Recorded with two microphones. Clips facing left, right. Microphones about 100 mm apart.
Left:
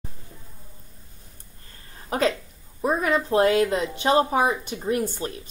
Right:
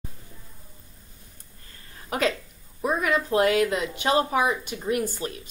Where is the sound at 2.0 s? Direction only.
30° left (ahead or behind).